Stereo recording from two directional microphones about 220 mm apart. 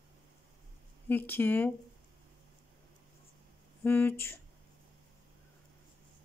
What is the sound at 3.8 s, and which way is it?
Speech, 10° left (ahead or behind).